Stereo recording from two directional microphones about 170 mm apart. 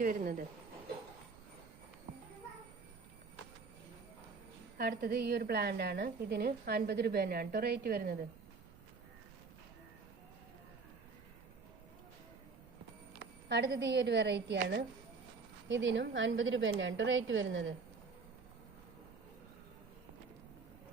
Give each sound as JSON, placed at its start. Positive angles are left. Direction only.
{"t": 0.0, "sound": "speech", "side_deg": -55}
{"t": 4.8, "sound": "a woman's voice", "side_deg": -60}
{"t": 13.5, "sound": "a woman's voice", "side_deg": -90}
{"t": 15.7, "sound": "a woman's voice", "side_deg": -90}